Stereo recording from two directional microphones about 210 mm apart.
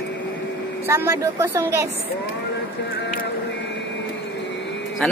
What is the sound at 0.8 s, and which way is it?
Speech, 10° right (ahead or behind).